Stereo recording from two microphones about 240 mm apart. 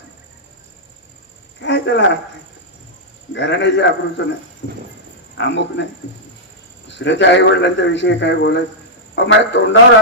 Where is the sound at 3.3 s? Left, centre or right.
Left.